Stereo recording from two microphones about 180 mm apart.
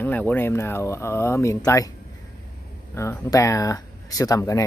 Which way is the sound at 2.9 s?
15° left (ahead or behind).